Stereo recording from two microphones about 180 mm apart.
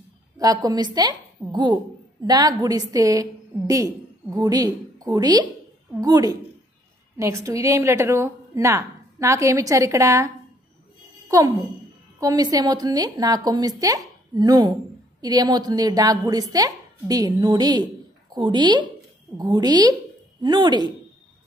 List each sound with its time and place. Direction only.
0.4 s a woman's voice: 20° right (ahead or behind)